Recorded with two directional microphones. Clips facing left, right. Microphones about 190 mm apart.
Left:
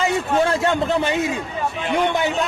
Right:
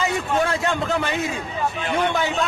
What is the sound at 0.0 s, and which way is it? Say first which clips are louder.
A man's voice: left 3 dB; 25° left (ahead or behind).